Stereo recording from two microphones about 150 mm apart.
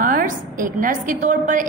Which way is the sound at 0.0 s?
60° right (ahead or behind).